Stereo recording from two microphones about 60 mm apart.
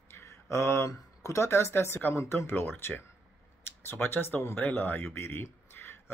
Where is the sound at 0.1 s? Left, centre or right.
Left.